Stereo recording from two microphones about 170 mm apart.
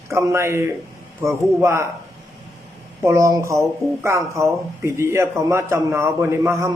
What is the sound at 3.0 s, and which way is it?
A man's voice, 15° right (ahead or behind).